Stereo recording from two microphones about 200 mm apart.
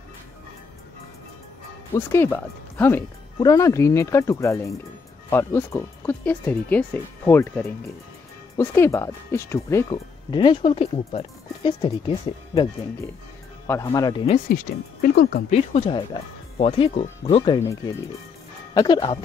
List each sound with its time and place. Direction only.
2.0 s speech: 10° left (ahead or behind)
13.7 s speech: 15° left (ahead or behind)
14.5 s speech: 45° left (ahead or behind)
15.7 s speech: 25° left (ahead or behind)
17.6 s speech: 15° left (ahead or behind)